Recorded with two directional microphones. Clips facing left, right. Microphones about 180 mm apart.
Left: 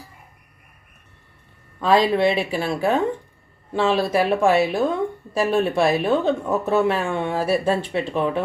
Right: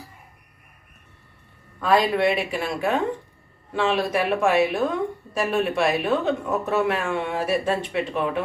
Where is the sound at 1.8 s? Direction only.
25° left (ahead or behind).